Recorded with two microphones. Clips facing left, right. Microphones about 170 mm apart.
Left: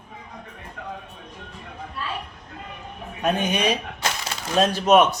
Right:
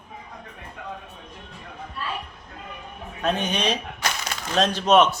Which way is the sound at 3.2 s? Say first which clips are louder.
Left 2 dB; 10° left (ahead or behind).